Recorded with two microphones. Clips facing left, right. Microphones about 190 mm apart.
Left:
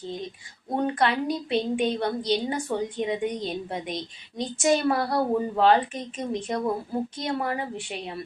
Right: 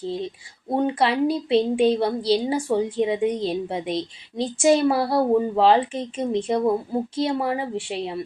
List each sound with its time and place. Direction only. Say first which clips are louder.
0.0 s a woman's voice: right 6 dB; 30° right (ahead or behind)